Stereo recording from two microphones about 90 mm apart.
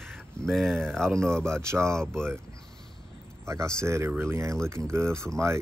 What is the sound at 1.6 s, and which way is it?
Speech, 30° right (ahead or behind).